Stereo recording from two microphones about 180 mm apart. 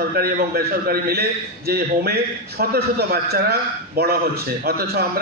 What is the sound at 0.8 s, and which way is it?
Speech, 55° right (ahead or behind).